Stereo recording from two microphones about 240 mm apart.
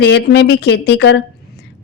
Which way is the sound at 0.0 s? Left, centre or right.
Left.